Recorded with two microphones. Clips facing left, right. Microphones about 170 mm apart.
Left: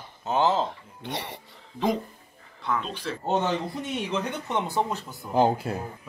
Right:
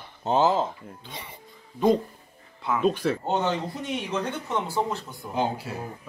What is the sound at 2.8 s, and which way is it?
Speech, 50° right (ahead or behind).